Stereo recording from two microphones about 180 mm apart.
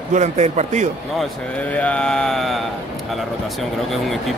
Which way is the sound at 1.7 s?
5° left (ahead or behind).